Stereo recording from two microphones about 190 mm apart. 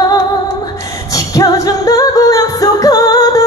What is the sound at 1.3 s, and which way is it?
Music, 20° left (ahead or behind).